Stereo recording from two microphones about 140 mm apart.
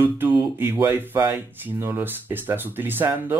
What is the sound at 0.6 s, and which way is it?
Speech, 15° right (ahead or behind).